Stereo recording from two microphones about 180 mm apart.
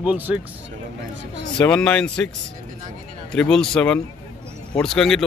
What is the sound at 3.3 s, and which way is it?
Speech, 5° left (ahead or behind).